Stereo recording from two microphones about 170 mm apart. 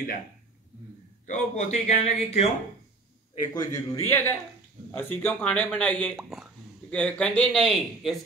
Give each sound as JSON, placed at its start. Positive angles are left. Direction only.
{"t": 1.2, "sound": "speech", "side_deg": 45}
{"t": 3.5, "sound": "a man's voice", "side_deg": 20}
{"t": 6.1, "sound": "speech", "side_deg": -5}
{"t": 6.9, "sound": "a man's voice", "side_deg": 5}